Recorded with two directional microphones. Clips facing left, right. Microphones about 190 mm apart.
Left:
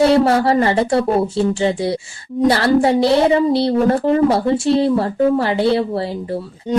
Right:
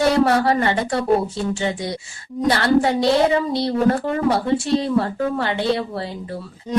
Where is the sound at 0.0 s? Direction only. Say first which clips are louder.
Left 4 dB; 30° left (ahead or behind).